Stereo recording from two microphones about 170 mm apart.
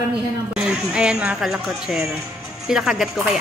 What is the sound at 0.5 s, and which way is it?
Speech, 5° right (ahead or behind).